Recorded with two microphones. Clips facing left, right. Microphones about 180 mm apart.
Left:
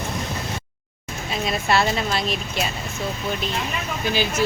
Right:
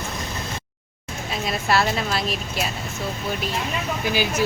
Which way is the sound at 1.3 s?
Centre (ahead or behind).